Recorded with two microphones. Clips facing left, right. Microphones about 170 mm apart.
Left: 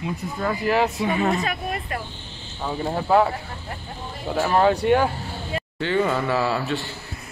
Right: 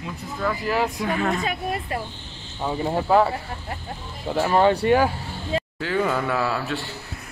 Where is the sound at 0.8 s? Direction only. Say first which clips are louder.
Left 2 dB; 5° left (ahead or behind).